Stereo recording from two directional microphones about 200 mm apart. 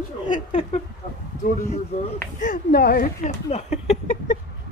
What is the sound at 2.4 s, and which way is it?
Speech, 45° left (ahead or behind).